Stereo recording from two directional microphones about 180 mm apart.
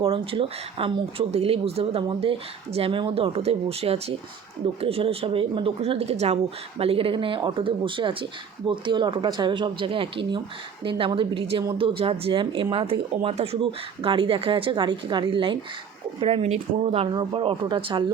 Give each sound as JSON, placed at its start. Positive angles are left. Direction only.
{"t": 0.0, "sound": "a woman's voice", "side_deg": -30}